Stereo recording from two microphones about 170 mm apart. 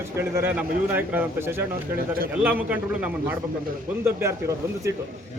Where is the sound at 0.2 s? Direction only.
15° right (ahead or behind).